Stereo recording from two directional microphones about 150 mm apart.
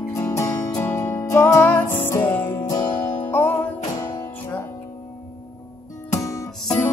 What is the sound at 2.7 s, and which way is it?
Music, 25° left (ahead or behind).